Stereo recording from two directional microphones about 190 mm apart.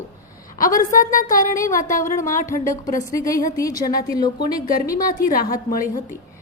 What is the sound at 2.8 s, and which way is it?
Speech, 15° left (ahead or behind).